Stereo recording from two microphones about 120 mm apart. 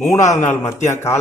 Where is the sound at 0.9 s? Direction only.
20° left (ahead or behind).